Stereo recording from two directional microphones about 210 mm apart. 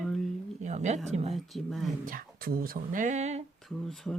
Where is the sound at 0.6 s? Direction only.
35° right (ahead or behind).